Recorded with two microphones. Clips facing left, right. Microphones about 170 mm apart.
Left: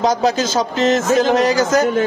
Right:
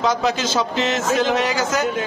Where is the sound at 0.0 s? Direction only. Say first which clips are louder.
Left 4 dB; 40° left (ahead or behind).